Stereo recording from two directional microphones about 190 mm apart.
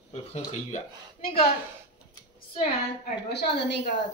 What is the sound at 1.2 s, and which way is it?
Speech, 50° left (ahead or behind).